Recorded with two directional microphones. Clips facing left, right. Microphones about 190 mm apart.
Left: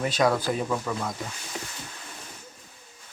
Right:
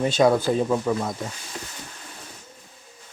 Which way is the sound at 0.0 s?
25° right (ahead or behind).